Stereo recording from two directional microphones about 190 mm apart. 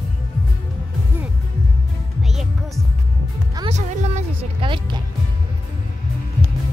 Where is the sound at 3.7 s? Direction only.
30° right (ahead or behind).